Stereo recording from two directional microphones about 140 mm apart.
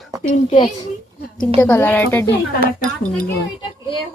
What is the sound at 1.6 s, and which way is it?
Speech, 10° left (ahead or behind).